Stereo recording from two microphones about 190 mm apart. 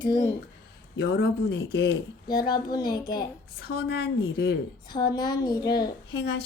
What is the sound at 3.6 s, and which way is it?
Speech, 55° left (ahead or behind).